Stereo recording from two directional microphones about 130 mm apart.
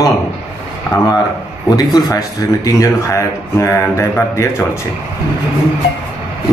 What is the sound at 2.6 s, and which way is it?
A man's voice, 25° left (ahead or behind).